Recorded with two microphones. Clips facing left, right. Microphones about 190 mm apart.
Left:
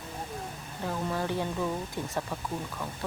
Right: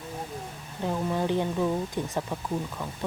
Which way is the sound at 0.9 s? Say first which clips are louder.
Right 4 dB; 15° right (ahead or behind).